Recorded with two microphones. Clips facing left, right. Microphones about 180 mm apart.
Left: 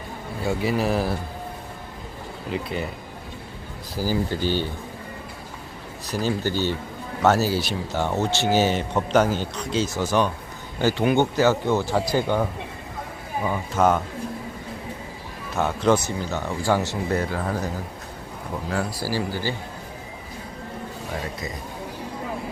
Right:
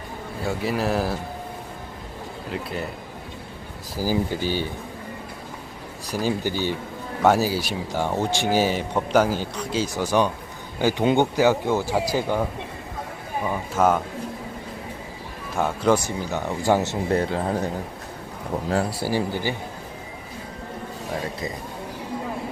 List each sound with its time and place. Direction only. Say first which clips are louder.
0.4 s speech: left 1 dB; centre (ahead or behind)
2.5 s speech: left 2 dB; centre (ahead or behind)
3.9 s speech: right 1 dB; 10° right (ahead or behind)
6.1 s speech: even; 10° right (ahead or behind)
13.5 s speech: even; 5° right (ahead or behind)
15.5 s speech: even; 10° right (ahead or behind); by 17.7 s 30° right (ahead or behind)
18.7 s speech: right 3 dB; 30° right (ahead or behind)